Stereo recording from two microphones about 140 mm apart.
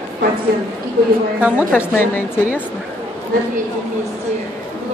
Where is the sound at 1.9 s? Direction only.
15° left (ahead or behind).